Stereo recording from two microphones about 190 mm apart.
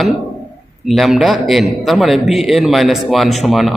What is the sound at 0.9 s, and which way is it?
A man's voice, centre (ahead or behind).